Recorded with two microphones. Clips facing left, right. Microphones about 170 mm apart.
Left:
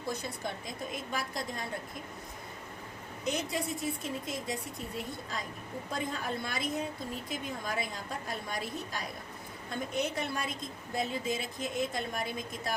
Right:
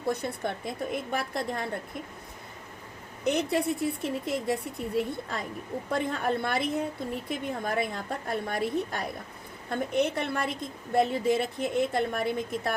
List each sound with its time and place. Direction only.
0.0 s a woman's voice: 60° right (ahead or behind)
3.2 s a woman's voice: 60° right (ahead or behind)
5.9 s a woman's voice: 60° right (ahead or behind)